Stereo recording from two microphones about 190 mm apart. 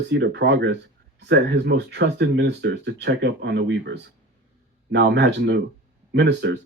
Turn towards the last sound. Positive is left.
turn(degrees=-65)  # may be behind; listen again after turning